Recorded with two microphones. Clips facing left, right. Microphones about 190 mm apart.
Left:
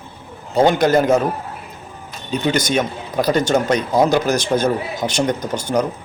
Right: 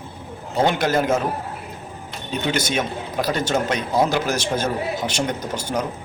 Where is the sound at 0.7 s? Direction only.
5° right (ahead or behind).